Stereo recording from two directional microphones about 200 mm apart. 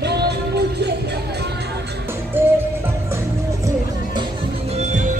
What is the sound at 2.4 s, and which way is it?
Music, 10° right (ahead or behind).